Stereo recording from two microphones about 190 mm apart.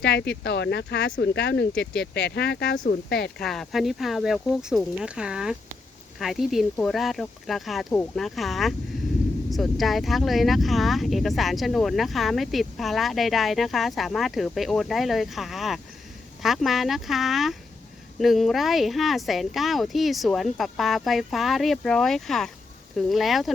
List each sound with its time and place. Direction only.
0.0 s speech: 65° left (ahead or behind)
3.3 s speech: centre (ahead or behind)